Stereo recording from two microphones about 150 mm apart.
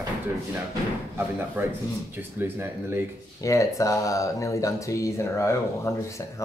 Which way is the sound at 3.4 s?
20° left (ahead or behind).